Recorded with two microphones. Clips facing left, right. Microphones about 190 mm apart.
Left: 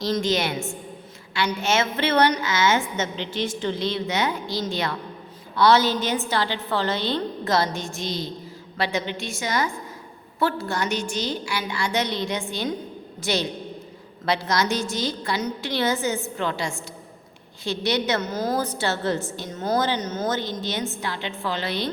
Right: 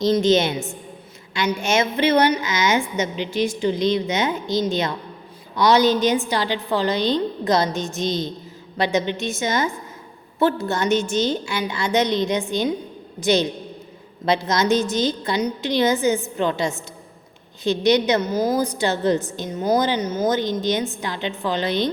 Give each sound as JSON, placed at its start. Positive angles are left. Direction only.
{"t": 0.0, "sound": "a woman's voice", "side_deg": -20}